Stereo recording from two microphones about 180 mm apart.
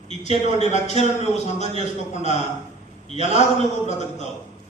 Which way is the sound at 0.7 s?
40° left (ahead or behind).